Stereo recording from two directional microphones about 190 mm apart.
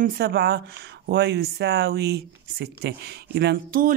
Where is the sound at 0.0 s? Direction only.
55° right (ahead or behind).